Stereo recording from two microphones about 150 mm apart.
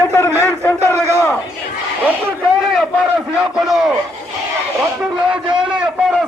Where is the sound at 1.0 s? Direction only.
20° right (ahead or behind).